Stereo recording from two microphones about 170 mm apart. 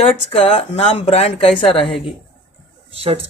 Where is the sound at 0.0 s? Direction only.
35° left (ahead or behind).